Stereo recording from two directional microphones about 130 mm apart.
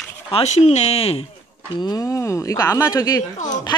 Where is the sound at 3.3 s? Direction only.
70° left (ahead or behind).